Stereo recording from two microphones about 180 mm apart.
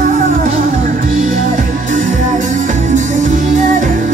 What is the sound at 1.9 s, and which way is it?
Music, 45° right (ahead or behind).